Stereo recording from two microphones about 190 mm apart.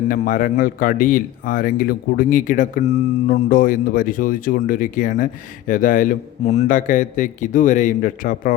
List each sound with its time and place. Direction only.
0.1 s speech: 45° left (ahead or behind)